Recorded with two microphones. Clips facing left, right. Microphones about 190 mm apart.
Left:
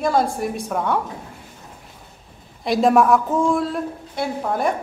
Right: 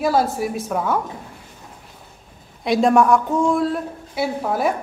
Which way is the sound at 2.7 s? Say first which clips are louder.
Even; centre (ahead or behind).